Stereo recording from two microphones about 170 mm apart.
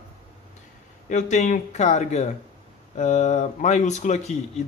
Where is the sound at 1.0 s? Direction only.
45° left (ahead or behind).